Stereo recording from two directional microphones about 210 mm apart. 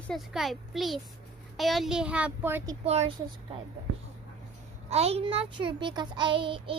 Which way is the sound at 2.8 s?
30° right (ahead or behind).